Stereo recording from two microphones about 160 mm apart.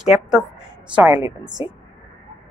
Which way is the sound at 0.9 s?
10° right (ahead or behind).